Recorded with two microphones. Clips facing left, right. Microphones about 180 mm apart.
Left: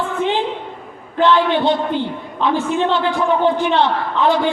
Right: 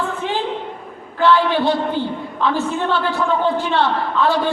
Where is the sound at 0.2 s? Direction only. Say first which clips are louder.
Left 4 dB; 20° left (ahead or behind).